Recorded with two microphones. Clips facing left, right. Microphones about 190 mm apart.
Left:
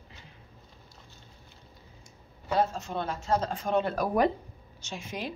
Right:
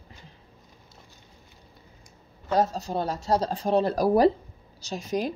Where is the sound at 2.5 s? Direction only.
40° right (ahead or behind).